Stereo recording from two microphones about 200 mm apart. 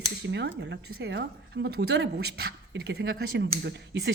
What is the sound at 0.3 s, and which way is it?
A woman's voice, 60° right (ahead or behind).